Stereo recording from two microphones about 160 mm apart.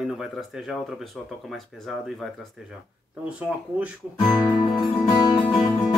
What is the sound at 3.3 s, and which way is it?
Speech, 5° right (ahead or behind).